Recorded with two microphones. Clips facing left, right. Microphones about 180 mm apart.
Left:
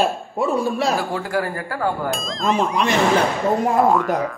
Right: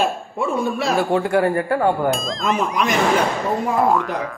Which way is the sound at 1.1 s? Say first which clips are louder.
Right 6 dB; 25° right (ahead or behind).